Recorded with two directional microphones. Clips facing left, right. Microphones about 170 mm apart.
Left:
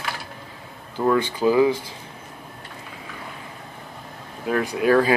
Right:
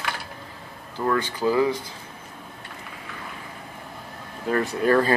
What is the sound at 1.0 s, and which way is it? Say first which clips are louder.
Speech: left 4 dB; 15° left (ahead or behind).